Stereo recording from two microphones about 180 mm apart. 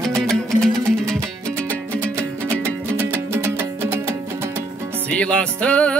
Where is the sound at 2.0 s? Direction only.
15° right (ahead or behind).